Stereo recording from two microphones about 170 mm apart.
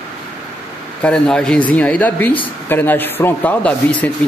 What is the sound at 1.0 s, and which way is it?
A man's voice, 5° left (ahead or behind).